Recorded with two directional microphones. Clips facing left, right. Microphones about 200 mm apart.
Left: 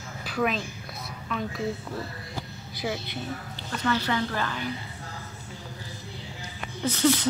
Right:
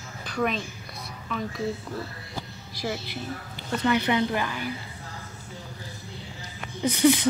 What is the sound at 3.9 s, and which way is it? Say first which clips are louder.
Speech: right 3 dB; 20° right (ahead or behind).